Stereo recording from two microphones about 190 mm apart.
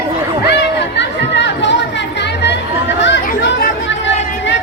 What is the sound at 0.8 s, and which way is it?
Chatter, 65° left (ahead or behind).